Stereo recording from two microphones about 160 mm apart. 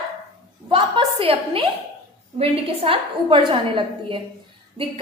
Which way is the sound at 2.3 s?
35° right (ahead or behind).